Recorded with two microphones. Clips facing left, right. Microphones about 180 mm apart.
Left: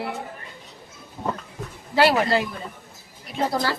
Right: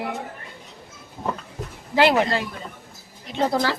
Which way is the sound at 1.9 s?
20° right (ahead or behind).